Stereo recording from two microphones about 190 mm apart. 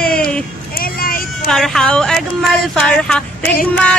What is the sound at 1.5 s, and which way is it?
Speech, centre (ahead or behind).